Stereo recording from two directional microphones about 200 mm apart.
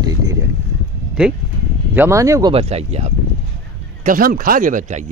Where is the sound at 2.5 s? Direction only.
30° right (ahead or behind).